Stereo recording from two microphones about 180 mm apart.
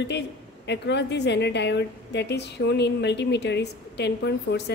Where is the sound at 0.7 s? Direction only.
70° left (ahead or behind).